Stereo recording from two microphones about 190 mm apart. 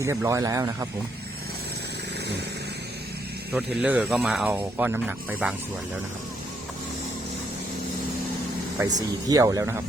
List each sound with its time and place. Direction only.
0.0 s speech: 15° right (ahead or behind)
3.8 s speech: 5° right (ahead or behind)
9.0 s speech: 20° right (ahead or behind)